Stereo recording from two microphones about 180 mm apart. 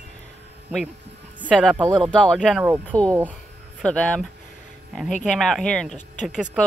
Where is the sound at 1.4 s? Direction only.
5° left (ahead or behind).